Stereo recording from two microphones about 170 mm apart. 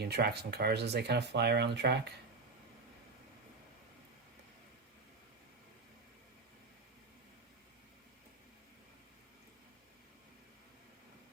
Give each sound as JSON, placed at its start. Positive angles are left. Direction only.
{"t": 0.0, "sound": "speech", "side_deg": -70}